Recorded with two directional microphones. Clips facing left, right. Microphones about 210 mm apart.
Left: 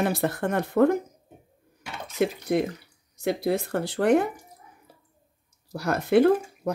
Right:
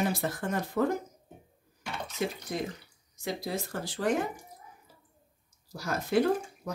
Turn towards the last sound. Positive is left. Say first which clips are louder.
# left 7 dB
turn(degrees=60)  # may be behind; listen again after turning